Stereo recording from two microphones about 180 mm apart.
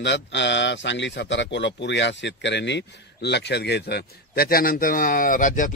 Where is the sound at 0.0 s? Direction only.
80° left.